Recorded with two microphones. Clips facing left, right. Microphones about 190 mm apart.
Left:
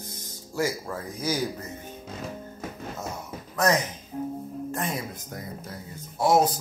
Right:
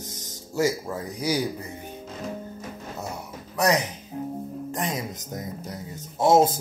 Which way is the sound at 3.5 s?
15° right (ahead or behind).